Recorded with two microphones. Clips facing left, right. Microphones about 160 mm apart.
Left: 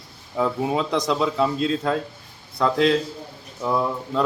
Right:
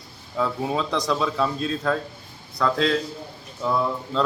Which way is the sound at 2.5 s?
20° left (ahead or behind).